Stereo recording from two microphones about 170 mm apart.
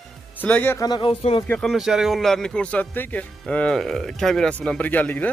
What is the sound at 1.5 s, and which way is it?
Speech, centre (ahead or behind).